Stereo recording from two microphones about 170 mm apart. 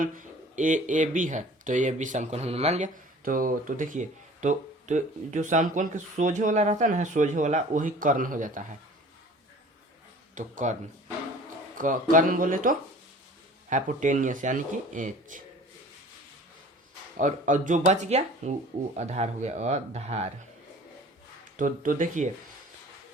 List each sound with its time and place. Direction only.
0.0 s speech: 50° right (ahead or behind)
3.2 s speech: 55° right (ahead or behind)
10.3 s speech: 50° right (ahead or behind)
11.8 s speech: 50° right (ahead or behind)
17.2 s speech: 50° right (ahead or behind)
21.5 s speech: 50° right (ahead or behind)